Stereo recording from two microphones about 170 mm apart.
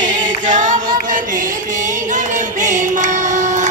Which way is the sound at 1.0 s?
50° right (ahead or behind).